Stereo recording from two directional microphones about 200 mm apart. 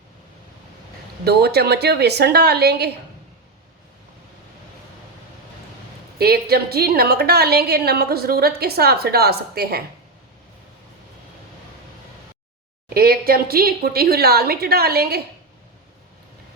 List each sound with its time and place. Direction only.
1.2 s a woman's voice: 55° right (ahead or behind)
6.1 s a woman's voice: 50° right (ahead or behind)
12.9 s a woman's voice: 50° right (ahead or behind)